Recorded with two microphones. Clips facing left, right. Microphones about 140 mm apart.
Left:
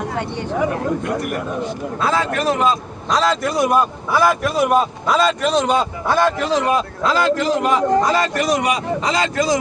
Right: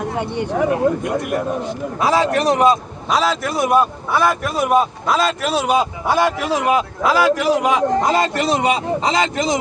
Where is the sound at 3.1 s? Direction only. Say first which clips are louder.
Left 1 dB; centre (ahead or behind); by 9.6 s 20° right (ahead or behind).